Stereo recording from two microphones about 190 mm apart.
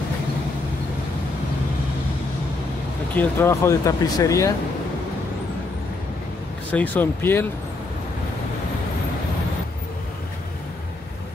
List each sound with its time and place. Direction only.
3.2 s speech: 15° left (ahead or behind)
6.7 s speech: 10° left (ahead or behind)